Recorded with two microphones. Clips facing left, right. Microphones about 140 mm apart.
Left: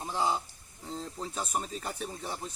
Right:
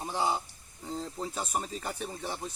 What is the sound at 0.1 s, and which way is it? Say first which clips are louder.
Speech: even; 10° right (ahead or behind).